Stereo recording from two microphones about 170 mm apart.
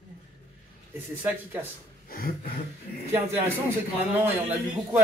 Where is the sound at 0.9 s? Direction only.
10° right (ahead or behind).